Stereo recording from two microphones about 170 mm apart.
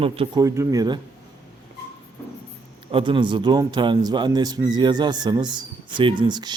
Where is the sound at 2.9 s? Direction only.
30° right (ahead or behind).